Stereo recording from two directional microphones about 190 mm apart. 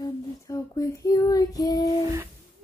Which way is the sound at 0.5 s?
15° left (ahead or behind).